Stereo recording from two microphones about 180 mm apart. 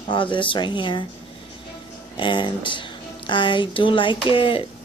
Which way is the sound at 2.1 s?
25° left (ahead or behind).